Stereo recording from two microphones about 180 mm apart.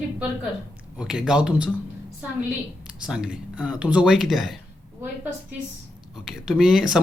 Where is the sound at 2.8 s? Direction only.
5° right (ahead or behind).